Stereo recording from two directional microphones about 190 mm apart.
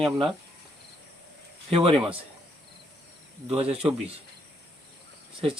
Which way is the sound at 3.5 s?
30° right (ahead or behind).